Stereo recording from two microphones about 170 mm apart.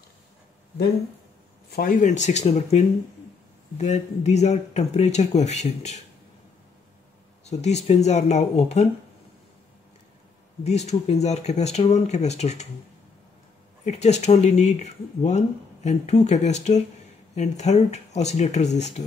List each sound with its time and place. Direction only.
1.7 s speech: 55° left (ahead or behind); by 5.9 s 40° left (ahead or behind)
7.4 s speech: 40° left (ahead or behind)
10.6 s speech: 40° left (ahead or behind)
13.8 s speech: 40° left (ahead or behind)